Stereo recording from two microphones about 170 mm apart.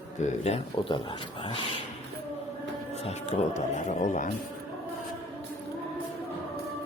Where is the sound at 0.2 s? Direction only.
45° left (ahead or behind).